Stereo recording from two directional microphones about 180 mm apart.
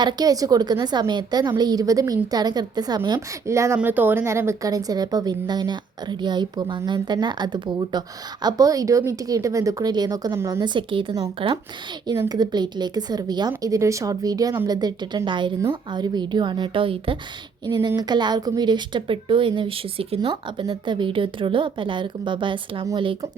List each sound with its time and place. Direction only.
0.0 s a woman's voice: 25° right (ahead or behind)